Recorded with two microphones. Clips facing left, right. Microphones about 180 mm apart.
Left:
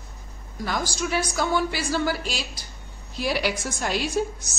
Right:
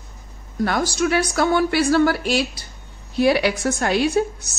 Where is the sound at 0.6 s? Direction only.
65° right (ahead or behind).